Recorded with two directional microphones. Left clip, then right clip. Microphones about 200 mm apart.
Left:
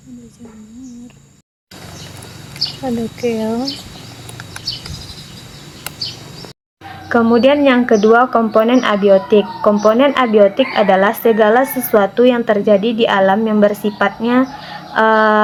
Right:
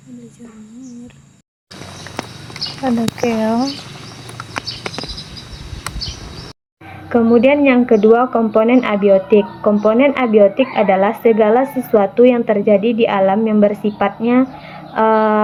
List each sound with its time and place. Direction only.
2.8 s speech: 5° right (ahead or behind)
7.1 s speech: 20° left (ahead or behind)